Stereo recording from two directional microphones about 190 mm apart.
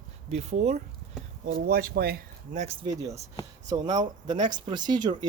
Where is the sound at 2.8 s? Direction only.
15° right (ahead or behind).